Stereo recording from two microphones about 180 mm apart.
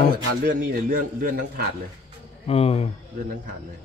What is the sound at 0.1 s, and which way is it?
A man's voice, 50° right (ahead or behind).